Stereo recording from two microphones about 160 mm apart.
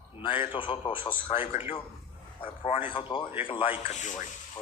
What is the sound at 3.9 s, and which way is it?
Rub, 50° left (ahead or behind).